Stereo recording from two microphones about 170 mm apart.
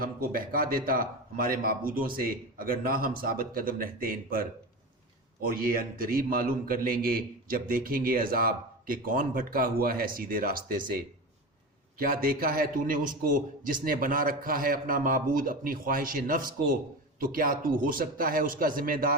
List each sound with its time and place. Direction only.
0.0 s a man's voice: 60° right (ahead or behind)
5.5 s a man's voice: 55° right (ahead or behind)